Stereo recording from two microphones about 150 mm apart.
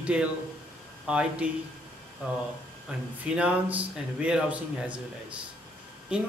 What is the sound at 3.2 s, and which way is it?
Speech, 10° right (ahead or behind).